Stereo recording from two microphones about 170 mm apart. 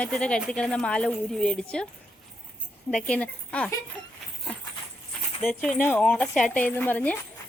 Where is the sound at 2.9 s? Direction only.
5° left (ahead or behind).